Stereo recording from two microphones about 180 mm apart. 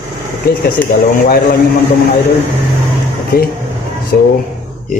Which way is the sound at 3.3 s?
55° left (ahead or behind).